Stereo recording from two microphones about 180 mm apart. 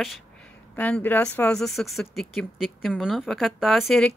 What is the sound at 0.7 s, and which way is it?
Speech, 10° left (ahead or behind).